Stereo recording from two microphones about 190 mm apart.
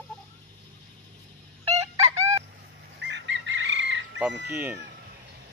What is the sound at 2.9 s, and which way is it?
Bird, 70° right (ahead or behind).